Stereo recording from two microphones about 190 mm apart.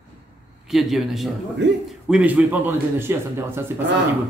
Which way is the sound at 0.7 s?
Centre (ahead or behind).